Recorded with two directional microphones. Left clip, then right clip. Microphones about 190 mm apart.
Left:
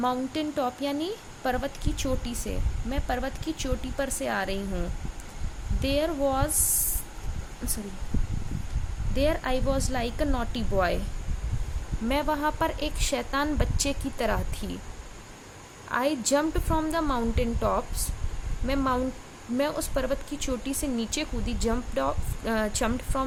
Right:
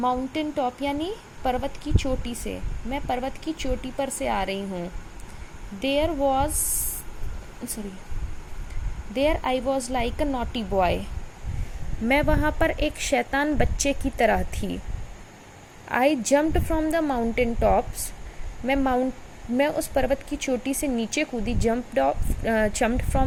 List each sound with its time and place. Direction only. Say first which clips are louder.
0.0 s a woman's voice: right 3 dB; centre (ahead or behind)
5.8 s a woman's voice: right 3 dB; 5° right (ahead or behind)
9.1 s a woman's voice: right 3 dB; 5° right (ahead or behind)
12.0 s speech: right 4 dB; 20° right (ahead or behind)
15.9 s speech: right 5 dB; 20° right (ahead or behind)